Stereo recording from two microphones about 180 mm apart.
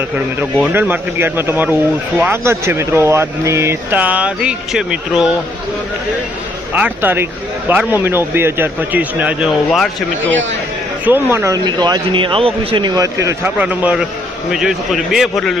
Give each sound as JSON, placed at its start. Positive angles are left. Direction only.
{"t": 0.3, "sound": "speech", "side_deg": -10}
{"t": 6.7, "sound": "speech", "side_deg": -10}
{"t": 11.0, "sound": "speech", "side_deg": -10}